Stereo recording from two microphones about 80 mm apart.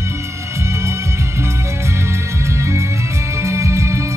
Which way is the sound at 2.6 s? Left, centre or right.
Right.